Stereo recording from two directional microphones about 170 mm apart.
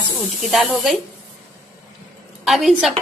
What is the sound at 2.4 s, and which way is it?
Speech, centre (ahead or behind).